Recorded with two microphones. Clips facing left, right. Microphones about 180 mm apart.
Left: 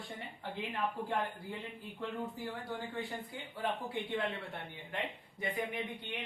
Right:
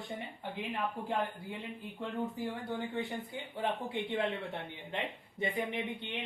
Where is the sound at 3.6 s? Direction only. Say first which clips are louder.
Right 2 dB; 25° right (ahead or behind).